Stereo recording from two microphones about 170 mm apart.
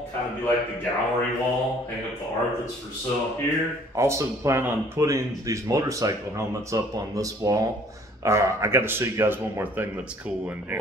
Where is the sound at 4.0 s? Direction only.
15° right (ahead or behind).